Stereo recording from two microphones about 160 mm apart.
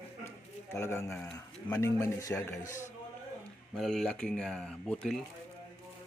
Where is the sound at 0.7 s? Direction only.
15° left (ahead or behind).